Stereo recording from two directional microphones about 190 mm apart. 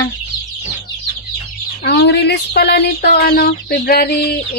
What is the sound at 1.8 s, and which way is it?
Speech, 60° left (ahead or behind).